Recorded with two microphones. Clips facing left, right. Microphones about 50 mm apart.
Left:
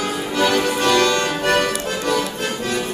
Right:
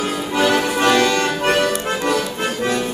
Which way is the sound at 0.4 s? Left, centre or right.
Centre.